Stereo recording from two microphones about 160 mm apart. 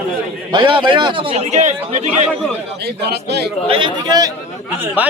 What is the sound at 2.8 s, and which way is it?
Speech, 90° right.